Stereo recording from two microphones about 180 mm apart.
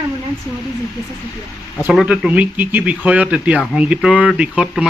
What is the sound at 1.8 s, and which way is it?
Speech, 10° right (ahead or behind).